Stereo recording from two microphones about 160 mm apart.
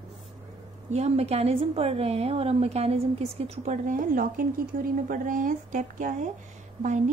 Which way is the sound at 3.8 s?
55° right (ahead or behind).